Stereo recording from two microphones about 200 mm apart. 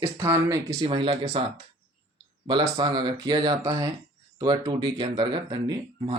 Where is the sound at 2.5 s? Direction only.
25° right (ahead or behind).